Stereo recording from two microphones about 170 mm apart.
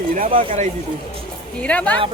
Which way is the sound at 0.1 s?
50° right (ahead or behind).